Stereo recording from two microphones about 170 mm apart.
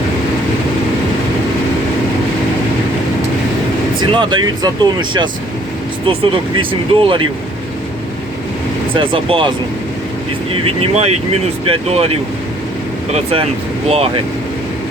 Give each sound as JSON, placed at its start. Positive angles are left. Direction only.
{"t": 4.1, "sound": "speech", "side_deg": -30}
{"t": 8.9, "sound": "speech", "side_deg": -30}
{"t": 10.5, "sound": "speech", "side_deg": -40}